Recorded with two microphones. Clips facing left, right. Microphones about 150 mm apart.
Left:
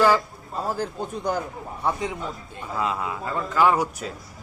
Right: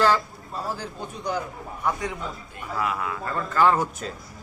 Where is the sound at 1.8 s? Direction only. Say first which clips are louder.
Left 1 dB; 25° left (ahead or behind).